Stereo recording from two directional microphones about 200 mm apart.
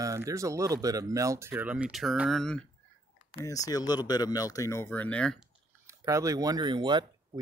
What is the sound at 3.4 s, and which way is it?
Speech, 15° left (ahead or behind).